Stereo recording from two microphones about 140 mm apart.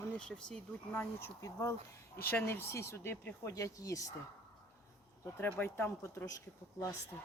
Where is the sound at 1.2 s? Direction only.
20° left (ahead or behind).